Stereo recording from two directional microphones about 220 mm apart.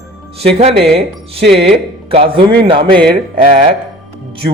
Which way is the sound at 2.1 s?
25° right (ahead or behind).